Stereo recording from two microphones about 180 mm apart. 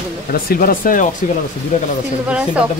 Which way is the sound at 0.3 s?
55° left (ahead or behind).